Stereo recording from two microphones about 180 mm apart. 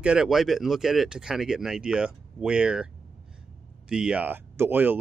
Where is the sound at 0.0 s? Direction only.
5° right (ahead or behind).